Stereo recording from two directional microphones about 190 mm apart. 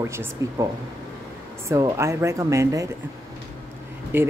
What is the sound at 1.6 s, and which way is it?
Speech, 15° right (ahead or behind).